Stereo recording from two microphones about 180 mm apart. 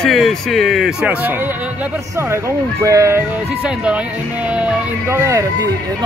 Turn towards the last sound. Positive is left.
turn(degrees=-15)  # may be behind; listen again after turning